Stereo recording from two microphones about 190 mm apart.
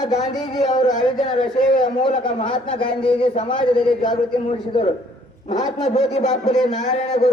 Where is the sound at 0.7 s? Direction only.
20° left (ahead or behind).